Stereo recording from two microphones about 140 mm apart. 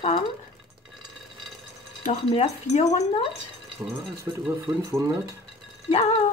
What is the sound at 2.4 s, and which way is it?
Speech, 50° left (ahead or behind).